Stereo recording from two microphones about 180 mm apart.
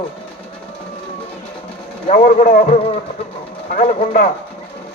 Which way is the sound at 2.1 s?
50° left (ahead or behind).